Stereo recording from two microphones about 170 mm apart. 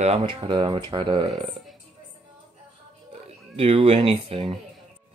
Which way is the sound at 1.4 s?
Centre (ahead or behind).